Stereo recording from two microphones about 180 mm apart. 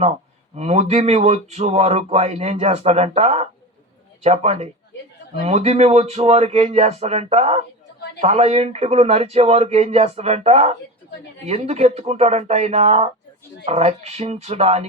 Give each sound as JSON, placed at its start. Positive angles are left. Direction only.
{"t": 0.5, "sound": "speech", "side_deg": -35}